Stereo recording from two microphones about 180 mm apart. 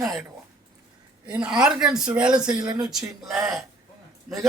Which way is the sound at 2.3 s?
20° right (ahead or behind).